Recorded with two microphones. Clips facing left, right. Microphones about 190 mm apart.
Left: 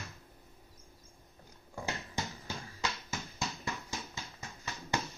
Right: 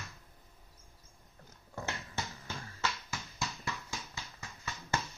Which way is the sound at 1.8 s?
10° left (ahead or behind).